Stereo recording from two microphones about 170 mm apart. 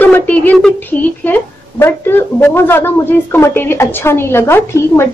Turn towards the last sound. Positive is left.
turn(degrees=15)  # may be behind; listen again after turning